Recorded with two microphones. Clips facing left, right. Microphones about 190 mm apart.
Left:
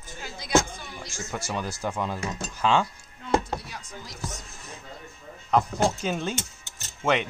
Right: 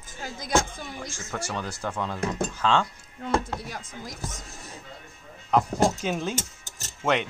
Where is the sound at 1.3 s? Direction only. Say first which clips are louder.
Left 1 dB; 10° left (ahead or behind).